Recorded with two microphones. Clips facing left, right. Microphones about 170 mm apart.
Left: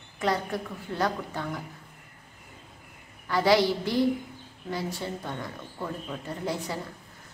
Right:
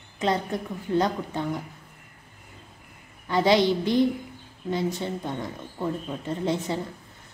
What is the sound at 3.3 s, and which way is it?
A woman's voice, 20° right (ahead or behind).